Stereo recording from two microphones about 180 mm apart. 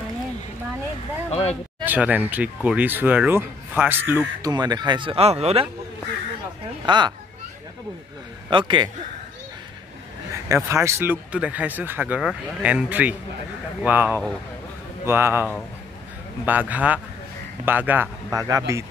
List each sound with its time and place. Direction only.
1.3 s speech: 35° left (ahead or behind)
1.9 s speech: 10° right (ahead or behind); by 5.7 s 35° right (ahead or behind)
6.9 s a man's voice: 25° right (ahead or behind)
8.5 s a man's voice: 25° right (ahead or behind)
10.5 s a man's voice: 15° right (ahead or behind)